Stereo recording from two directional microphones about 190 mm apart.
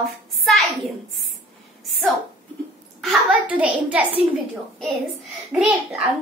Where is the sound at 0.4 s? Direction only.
Centre (ahead or behind).